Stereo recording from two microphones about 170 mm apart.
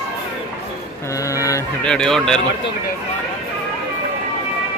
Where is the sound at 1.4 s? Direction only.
20° left (ahead or behind).